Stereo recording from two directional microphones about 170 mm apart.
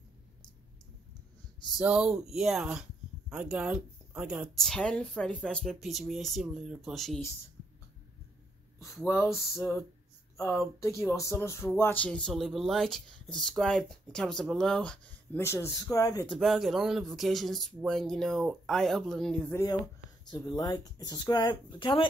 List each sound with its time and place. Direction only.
1.8 s speech: 5° right (ahead or behind)
8.7 s speech: 15° left (ahead or behind)
9.1 s a sound: 10° left (ahead or behind)
10.8 s speech: 15° left (ahead or behind)
16.3 s speech: centre (ahead or behind)
19.5 s speech: 20° left (ahead or behind)